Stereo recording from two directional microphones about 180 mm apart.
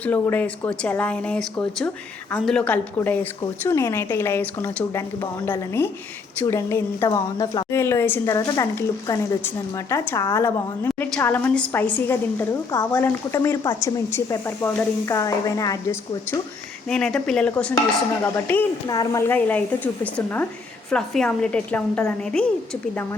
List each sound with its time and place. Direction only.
0.0 s a woman's voice: 10° left (ahead or behind)
16.9 s a woman's voice: 5° left (ahead or behind)